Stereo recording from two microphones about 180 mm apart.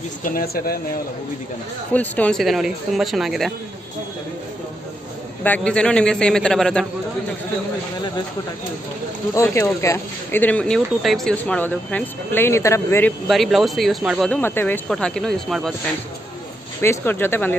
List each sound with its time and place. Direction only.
0.2 s speech: 55° left (ahead or behind)
2.0 s speech: 5° left (ahead or behind)
5.4 s speech: 5° left (ahead or behind)
9.3 s speech: 15° left (ahead or behind)
13.3 s speech: centre (ahead or behind)
16.8 s speech: 10° left (ahead or behind)